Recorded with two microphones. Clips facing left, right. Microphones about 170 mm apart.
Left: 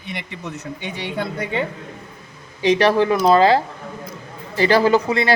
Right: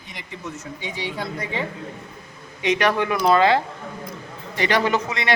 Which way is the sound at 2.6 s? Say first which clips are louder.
Left 5 dB; 30° left (ahead or behind).